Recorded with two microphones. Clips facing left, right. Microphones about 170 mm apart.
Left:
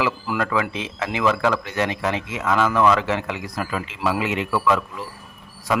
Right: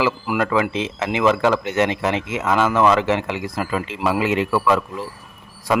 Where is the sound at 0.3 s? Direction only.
25° right (ahead or behind).